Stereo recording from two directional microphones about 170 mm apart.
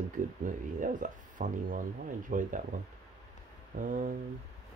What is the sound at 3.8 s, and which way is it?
Speech, 50° right (ahead or behind).